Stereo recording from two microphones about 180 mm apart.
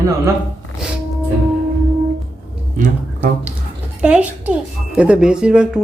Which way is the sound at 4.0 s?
5° right (ahead or behind).